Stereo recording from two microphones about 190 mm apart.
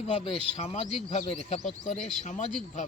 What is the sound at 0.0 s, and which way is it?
A man's voice, 30° left (ahead or behind).